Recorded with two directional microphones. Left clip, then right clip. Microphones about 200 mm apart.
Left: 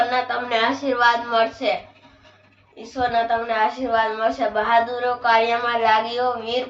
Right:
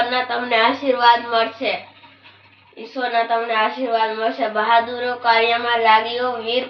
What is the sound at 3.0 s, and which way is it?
A woman's voice, 15° left (ahead or behind).